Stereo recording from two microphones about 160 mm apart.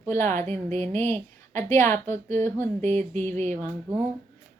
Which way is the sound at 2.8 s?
45° right (ahead or behind).